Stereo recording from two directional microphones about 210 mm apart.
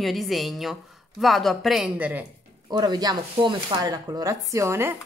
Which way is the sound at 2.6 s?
20° right (ahead or behind).